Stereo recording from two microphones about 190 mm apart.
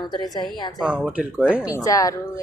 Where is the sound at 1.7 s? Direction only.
20° left (ahead or behind).